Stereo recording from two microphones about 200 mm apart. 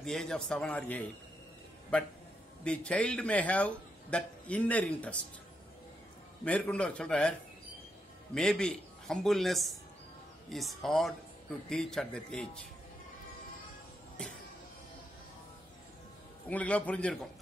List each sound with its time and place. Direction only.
0.0 s a man's voice: centre (ahead or behind)
6.4 s speech: 5° left (ahead or behind)
8.4 s speech: 5° left (ahead or behind)
16.4 s a man's voice: 5° left (ahead or behind)